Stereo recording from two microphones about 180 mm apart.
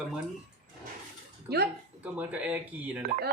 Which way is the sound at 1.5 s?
65° right (ahead or behind).